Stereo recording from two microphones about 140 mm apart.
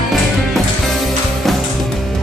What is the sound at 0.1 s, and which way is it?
Music, centre (ahead or behind).